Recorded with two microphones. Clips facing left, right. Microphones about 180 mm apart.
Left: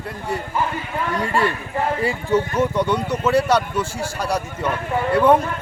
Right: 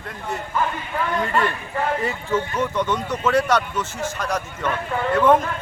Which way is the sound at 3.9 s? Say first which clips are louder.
Left 2 dB; 35° left (ahead or behind).